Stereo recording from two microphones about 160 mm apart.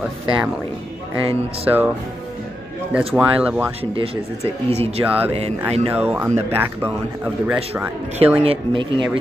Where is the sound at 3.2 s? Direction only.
10° right (ahead or behind).